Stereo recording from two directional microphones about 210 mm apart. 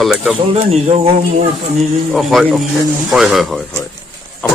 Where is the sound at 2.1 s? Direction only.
Centre (ahead or behind).